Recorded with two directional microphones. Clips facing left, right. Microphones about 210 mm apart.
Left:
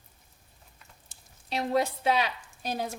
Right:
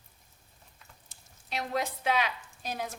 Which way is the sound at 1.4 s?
35° left (ahead or behind).